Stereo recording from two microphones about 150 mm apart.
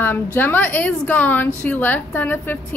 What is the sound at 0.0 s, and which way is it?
A woman's voice, 15° left (ahead or behind).